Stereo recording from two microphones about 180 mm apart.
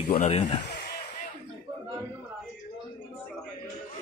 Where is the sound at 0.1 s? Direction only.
30° left (ahead or behind).